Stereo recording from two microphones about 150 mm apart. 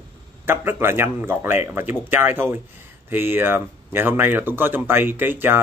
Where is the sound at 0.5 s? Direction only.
15° right (ahead or behind).